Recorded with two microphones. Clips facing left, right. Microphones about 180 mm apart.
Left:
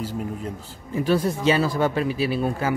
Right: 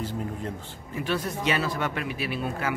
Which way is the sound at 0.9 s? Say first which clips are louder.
Left 7 dB; 35° left (ahead or behind).